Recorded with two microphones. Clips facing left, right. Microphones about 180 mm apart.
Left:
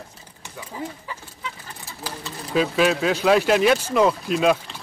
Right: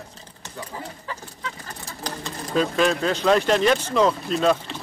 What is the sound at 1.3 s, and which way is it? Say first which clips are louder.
Fowl: right 1 dB; 10° left (ahead or behind).